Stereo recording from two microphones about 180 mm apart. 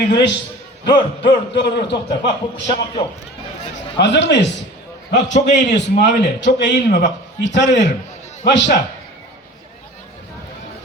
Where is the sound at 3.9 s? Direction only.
75° left (ahead or behind).